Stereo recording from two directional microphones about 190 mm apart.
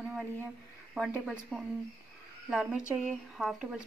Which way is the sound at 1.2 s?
5° right (ahead or behind).